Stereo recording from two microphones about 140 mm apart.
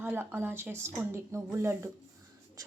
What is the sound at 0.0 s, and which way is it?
Speech, 15° right (ahead or behind).